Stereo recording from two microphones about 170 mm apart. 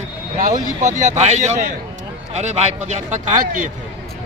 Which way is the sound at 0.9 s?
45° right (ahead or behind).